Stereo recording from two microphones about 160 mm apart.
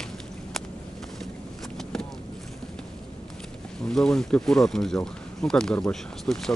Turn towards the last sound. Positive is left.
turn(degrees=5)  # may be behind; listen again after turning